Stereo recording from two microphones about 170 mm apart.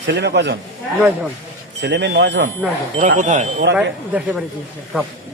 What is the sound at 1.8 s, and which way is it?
Speech, 90° right.